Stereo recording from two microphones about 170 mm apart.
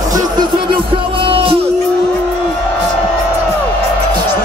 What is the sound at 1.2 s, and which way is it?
Music, 30° right (ahead or behind).